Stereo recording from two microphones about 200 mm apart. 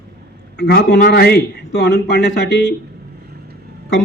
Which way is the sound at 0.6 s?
55° left (ahead or behind).